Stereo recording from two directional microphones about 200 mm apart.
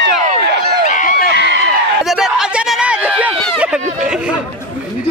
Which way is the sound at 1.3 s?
65° right (ahead or behind).